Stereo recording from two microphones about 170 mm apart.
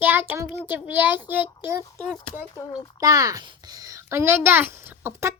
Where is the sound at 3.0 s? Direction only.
20° right (ahead or behind).